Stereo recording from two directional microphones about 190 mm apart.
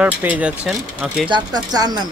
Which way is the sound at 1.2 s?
20° right (ahead or behind).